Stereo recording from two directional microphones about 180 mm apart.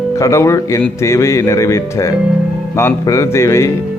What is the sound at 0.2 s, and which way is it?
Speech, 15° left (ahead or behind).